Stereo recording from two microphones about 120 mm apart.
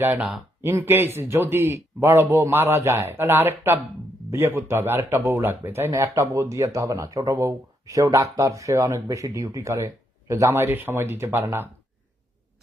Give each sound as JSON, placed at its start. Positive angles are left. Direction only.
{"t": 0.2, "sound": "speech", "side_deg": -5}
{"t": 0.6, "sound": "speech", "side_deg": -20}